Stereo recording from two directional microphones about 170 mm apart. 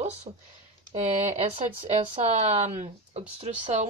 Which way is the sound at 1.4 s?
40° right (ahead or behind).